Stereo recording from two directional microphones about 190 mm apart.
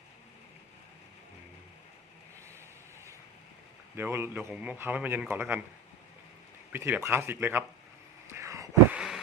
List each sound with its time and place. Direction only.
3.9 s a man's voice: 10° right (ahead or behind)
6.7 s a man's voice: 10° right (ahead or behind)
8.3 s a sound: 15° right (ahead or behind)
9.0 s insect: centre (ahead or behind)